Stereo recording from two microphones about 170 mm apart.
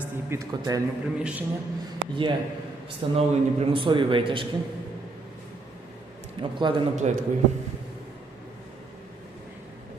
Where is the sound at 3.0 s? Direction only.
30° right (ahead or behind).